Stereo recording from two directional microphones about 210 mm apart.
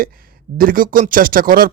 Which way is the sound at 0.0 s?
45° right (ahead or behind).